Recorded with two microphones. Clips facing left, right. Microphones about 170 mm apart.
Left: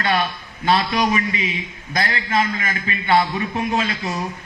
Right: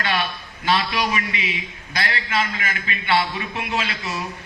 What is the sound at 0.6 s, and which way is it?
A man's voice, 45° left (ahead or behind).